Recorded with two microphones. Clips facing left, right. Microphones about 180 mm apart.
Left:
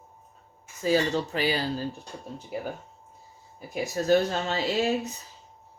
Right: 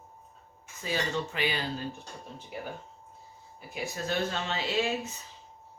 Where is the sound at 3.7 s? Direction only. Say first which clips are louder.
Left 10 dB; 40° left (ahead or behind).